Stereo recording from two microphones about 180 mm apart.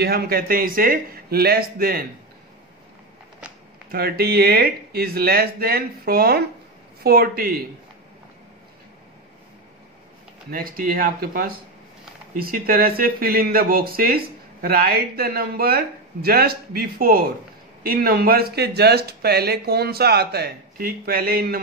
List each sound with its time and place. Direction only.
0.0 s speech: 60° right (ahead or behind)
3.9 s speech: 60° right (ahead or behind)
10.5 s speech: 50° right (ahead or behind)